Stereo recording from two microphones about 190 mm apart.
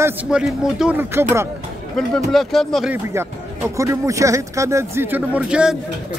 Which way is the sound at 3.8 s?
15° right (ahead or behind).